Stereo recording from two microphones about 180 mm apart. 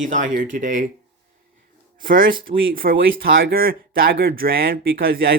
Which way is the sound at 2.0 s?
50° right (ahead or behind).